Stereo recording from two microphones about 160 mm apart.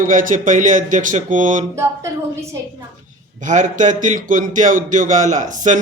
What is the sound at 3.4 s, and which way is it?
Speech, 50° right (ahead or behind).